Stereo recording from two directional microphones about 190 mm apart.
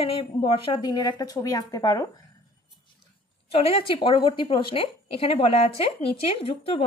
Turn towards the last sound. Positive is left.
turn(degrees=30)  # may be behind; listen again after turning